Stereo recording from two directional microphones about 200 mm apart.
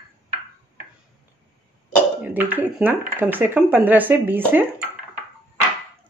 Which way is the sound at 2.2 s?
10° right (ahead or behind).